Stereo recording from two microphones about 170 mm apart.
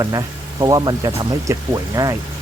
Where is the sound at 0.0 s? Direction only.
25° right (ahead or behind).